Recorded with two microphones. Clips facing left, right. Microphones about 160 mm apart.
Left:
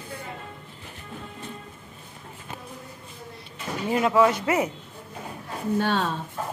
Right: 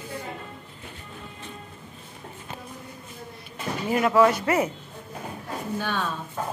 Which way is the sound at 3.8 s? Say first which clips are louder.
Right 1 dB; 20° left (ahead or behind).